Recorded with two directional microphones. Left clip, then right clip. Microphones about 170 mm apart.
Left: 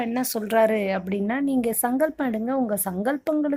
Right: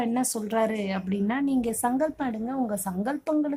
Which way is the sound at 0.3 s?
35° left (ahead or behind).